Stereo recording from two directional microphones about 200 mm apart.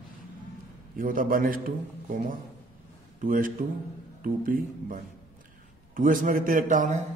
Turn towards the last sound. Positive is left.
turn(degrees=-40)  # may be behind; listen again after turning